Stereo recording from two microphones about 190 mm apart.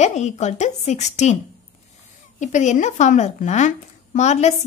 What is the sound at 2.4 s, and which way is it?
Speech, 40° left (ahead or behind).